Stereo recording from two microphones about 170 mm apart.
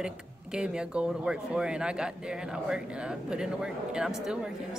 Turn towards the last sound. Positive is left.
turn(degrees=-5)  # may be behind; listen again after turning